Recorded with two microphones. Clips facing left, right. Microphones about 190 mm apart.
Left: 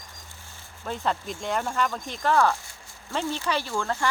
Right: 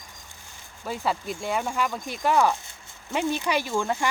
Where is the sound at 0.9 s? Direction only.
5° right (ahead or behind).